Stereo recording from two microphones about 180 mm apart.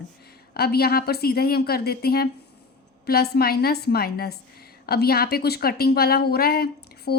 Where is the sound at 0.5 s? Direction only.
60° left (ahead or behind).